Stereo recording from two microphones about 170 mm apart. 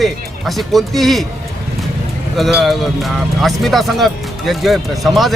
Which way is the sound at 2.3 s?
Centre (ahead or behind).